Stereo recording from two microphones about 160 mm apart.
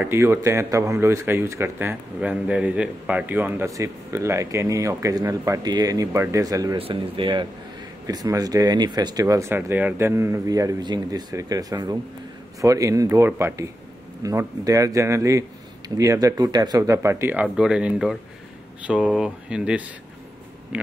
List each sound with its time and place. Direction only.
0.0 s speech: 15° right (ahead or behind)
6.8 s speech: 35° right (ahead or behind); by 20.9 s 10° right (ahead or behind)